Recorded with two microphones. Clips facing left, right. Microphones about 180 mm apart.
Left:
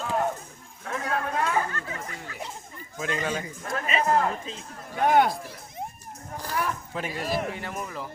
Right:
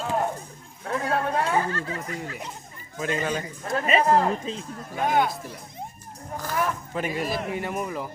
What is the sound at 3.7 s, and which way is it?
Speech, 30° right (ahead or behind).